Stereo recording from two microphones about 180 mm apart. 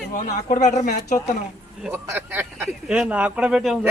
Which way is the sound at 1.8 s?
10° right (ahead or behind).